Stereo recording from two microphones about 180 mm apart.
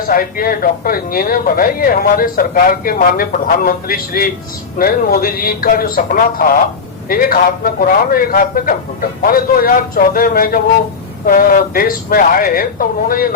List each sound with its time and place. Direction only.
0.1 s speech: 55° left (ahead or behind)